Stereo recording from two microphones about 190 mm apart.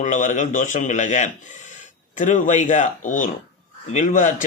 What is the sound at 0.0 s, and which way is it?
A man's voice, 40° left (ahead or behind).